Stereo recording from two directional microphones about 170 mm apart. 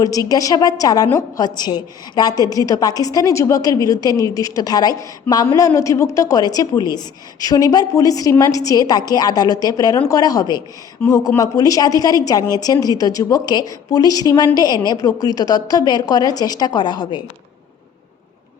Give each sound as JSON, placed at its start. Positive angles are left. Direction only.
{"t": 0.0, "sound": "a woman's voice", "side_deg": 20}